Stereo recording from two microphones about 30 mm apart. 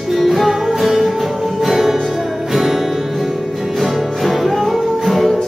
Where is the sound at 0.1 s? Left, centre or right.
Centre.